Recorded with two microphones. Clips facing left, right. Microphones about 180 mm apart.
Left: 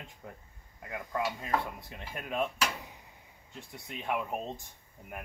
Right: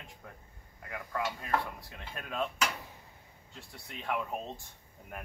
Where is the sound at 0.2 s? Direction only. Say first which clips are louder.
Left 3 dB; 20° left (ahead or behind).